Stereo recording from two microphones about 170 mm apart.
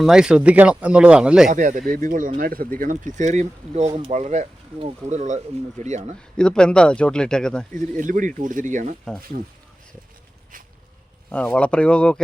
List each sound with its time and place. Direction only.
0.0 s speech: 5° right (ahead or behind)
1.5 s speech: 50° right (ahead or behind)
6.3 s speech: 5° left (ahead or behind)
7.7 s speech: 50° right (ahead or behind)
11.3 s speech: 5° left (ahead or behind)